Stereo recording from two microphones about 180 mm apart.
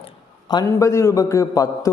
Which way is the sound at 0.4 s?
20° left (ahead or behind).